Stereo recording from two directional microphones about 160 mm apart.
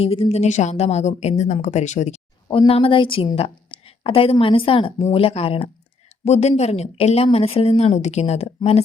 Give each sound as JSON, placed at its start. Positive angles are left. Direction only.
{"t": 0.0, "sound": "speech", "side_deg": 35}
{"t": 2.5, "sound": "a woman's voice", "side_deg": 35}